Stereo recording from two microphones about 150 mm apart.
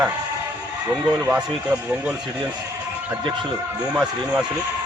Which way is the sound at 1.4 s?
5° right (ahead or behind).